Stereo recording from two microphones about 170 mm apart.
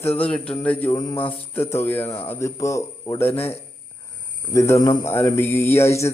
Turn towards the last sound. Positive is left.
turn(degrees=15)  # may be behind; listen again after turning